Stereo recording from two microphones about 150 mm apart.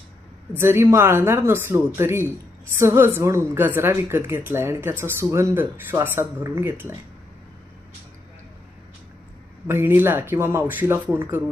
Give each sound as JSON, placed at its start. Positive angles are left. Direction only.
{"t": 0.5, "sound": "a woman's voice", "side_deg": -15}
{"t": 9.6, "sound": "a woman's voice", "side_deg": -15}